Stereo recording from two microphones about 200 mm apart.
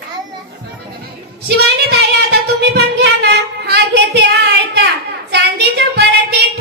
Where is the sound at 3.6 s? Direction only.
55° right (ahead or behind).